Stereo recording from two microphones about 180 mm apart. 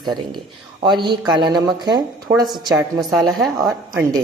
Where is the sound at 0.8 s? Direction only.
25° right (ahead or behind).